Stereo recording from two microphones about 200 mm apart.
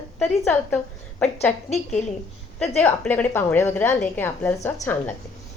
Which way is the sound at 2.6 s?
5° left (ahead or behind).